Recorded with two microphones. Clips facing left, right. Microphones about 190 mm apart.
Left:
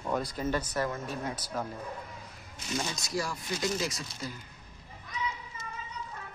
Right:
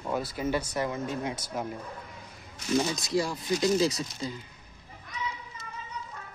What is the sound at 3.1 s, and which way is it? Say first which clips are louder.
Speech: right 6 dB; 25° right (ahead or behind).